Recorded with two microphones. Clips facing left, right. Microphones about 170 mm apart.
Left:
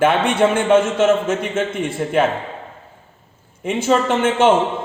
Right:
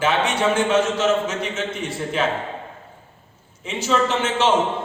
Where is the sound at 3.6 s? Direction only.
55° left (ahead or behind).